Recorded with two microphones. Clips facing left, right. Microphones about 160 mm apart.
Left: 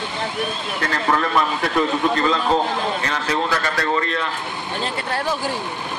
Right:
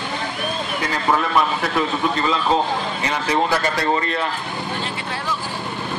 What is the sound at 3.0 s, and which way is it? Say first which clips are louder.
Speech: right 1 dB; 15° right (ahead or behind).